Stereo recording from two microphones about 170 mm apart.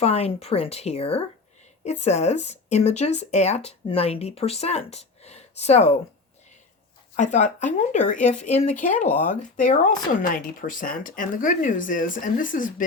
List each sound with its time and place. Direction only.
0.0 s speech: 35° left (ahead or behind)
7.2 s speech: 45° left (ahead or behind)